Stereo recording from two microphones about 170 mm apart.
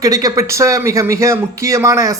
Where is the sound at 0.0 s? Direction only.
20° right (ahead or behind).